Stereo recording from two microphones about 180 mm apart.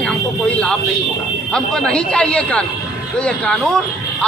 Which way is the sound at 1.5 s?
5° left (ahead or behind).